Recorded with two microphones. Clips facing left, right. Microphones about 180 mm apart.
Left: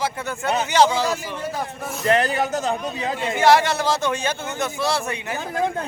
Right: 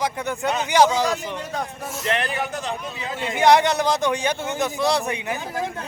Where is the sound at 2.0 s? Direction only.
40° left (ahead or behind).